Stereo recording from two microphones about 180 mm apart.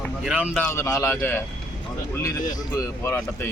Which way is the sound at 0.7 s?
15° left (ahead or behind).